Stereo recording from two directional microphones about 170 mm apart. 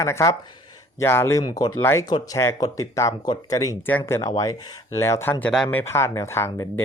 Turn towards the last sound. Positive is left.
turn(degrees=15)  # may be behind; listen again after turning